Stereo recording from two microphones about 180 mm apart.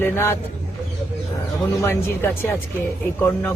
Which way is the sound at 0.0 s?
15° left (ahead or behind).